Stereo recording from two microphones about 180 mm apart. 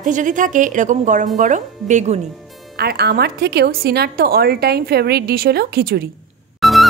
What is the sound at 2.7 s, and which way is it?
A woman's voice, 65° right (ahead or behind).